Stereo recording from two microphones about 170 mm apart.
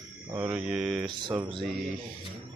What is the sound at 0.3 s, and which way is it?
Speech, 15° right (ahead or behind).